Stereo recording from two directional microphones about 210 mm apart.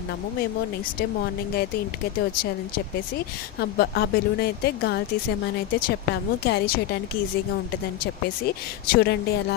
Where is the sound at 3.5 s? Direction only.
50° left (ahead or behind).